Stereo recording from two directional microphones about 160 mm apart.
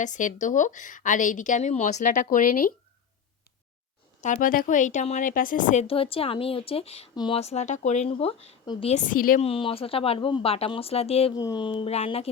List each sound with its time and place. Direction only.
0.0 s a woman's voice: 50° left (ahead or behind)
4.2 s a woman's voice: 55° left (ahead or behind)
5.9 s speech: 35° left (ahead or behind)
9.0 s speech: 60° left (ahead or behind)
9.4 s speech: 35° left (ahead or behind)
11.3 s speech: 25° left (ahead or behind)